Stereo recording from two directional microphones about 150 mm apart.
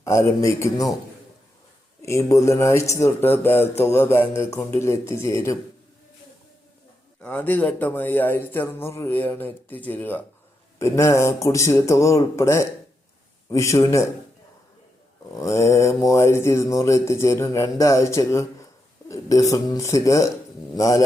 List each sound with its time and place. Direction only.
0.0 s speech: 20° left (ahead or behind)
2.0 s speech: 20° left (ahead or behind)
7.2 s speech: 10° left (ahead or behind)
15.4 s speech: 20° left (ahead or behind)